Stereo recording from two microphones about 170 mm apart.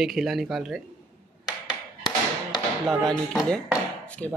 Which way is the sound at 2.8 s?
Centre (ahead or behind).